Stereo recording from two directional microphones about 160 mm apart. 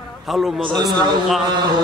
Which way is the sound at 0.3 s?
Centre (ahead or behind).